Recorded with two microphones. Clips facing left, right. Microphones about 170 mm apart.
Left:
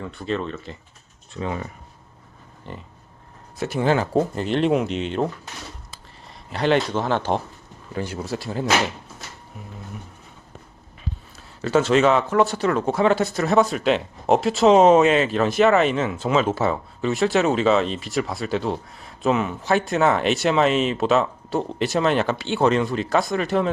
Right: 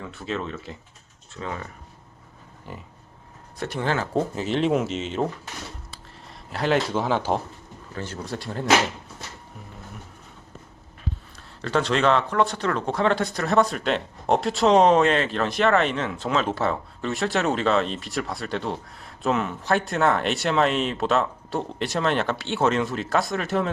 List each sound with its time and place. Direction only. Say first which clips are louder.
0.0 s speech: left 4 dB; 5° right (ahead or behind)
1.3 s speech: left 5 dB; 20° left (ahead or behind)
2.7 s pig: left 2 dB; 5° right (ahead or behind)
3.6 s speech: left 5 dB; 10° left (ahead or behind)
4.2 s speech: left 3 dB; centre (ahead or behind)
7.9 s speech: left 5 dB; 10° left (ahead or behind)
11.3 s speech: left 5 dB; 5° left (ahead or behind)